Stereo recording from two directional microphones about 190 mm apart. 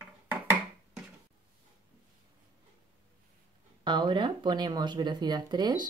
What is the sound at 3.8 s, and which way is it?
Speech, 25° right (ahead or behind).